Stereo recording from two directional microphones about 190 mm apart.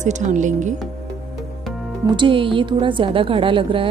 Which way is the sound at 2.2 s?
25° right (ahead or behind).